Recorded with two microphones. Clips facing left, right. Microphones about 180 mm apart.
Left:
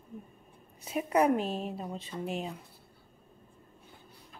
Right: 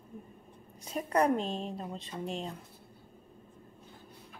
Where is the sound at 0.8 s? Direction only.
5° left (ahead or behind).